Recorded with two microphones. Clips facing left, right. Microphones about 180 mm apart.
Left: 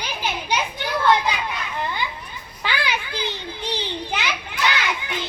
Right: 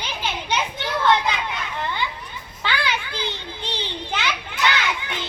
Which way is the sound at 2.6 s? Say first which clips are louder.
Even; 15° left (ahead or behind).